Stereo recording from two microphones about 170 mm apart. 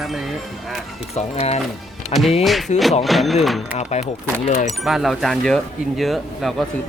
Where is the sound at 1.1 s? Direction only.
40° left (ahead or behind).